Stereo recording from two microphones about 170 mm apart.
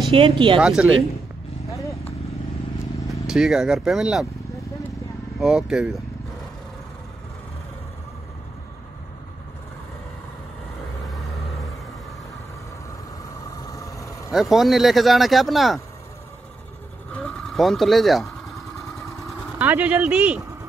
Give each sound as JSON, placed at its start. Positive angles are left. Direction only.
{"t": 0.1, "sound": "speech", "side_deg": -30}
{"t": 0.6, "sound": "speech", "side_deg": -5}
{"t": 3.1, "sound": "speech", "side_deg": 0}
{"t": 5.4, "sound": "speech", "side_deg": -5}
{"t": 13.7, "sound": "vehicle", "side_deg": 20}
{"t": 14.3, "sound": "speech", "side_deg": 0}
{"t": 17.1, "sound": "vehicle", "side_deg": 5}
{"t": 19.6, "sound": "speech", "side_deg": -10}